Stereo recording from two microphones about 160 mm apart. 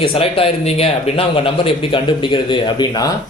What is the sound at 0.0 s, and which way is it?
Speech, 35° left (ahead or behind).